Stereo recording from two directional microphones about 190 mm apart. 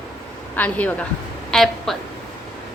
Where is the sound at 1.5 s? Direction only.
Centre (ahead or behind).